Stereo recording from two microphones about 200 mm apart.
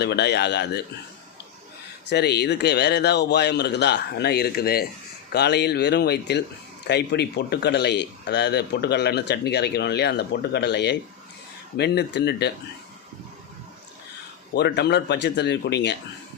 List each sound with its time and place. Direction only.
0.0 s speech: 55° left (ahead or behind)
2.0 s speech: 55° left (ahead or behind)
14.5 s speech: 55° left (ahead or behind)